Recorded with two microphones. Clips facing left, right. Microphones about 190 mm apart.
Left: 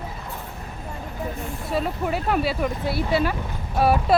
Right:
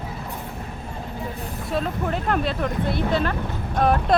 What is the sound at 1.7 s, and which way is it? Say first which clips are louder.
Speech: even; 5° left (ahead or behind).